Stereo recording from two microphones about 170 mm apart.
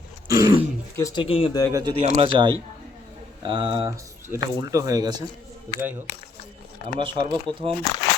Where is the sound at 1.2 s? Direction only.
35° left (ahead or behind).